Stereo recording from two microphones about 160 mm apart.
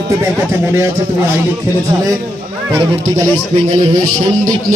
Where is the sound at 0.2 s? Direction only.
15° right (ahead or behind).